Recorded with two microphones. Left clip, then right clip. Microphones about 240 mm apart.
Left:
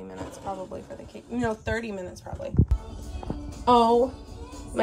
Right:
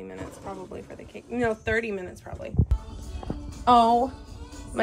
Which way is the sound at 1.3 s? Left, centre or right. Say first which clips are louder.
Right 3 dB; left.